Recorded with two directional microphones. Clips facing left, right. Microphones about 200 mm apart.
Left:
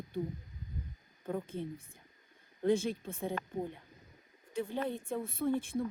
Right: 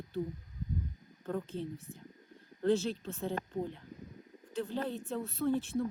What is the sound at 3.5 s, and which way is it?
Speech, 10° left (ahead or behind).